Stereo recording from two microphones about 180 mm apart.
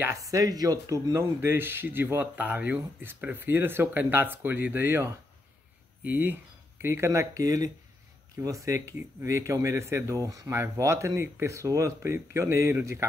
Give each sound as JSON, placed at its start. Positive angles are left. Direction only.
{"t": 0.0, "sound": "speech", "side_deg": -15}